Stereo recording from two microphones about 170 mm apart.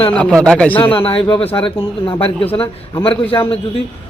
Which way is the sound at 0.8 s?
30° left (ahead or behind).